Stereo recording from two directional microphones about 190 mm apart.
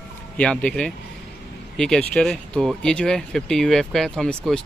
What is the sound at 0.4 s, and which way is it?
Speech, 5° left (ahead or behind).